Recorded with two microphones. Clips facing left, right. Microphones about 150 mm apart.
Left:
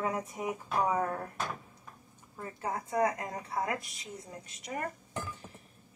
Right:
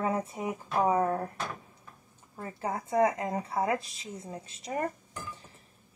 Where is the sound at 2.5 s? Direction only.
25° right (ahead or behind).